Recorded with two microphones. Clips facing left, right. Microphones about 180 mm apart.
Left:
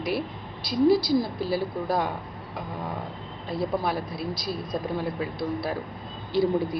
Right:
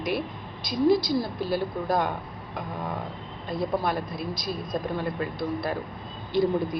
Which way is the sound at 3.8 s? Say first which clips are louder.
Even; 10° left (ahead or behind).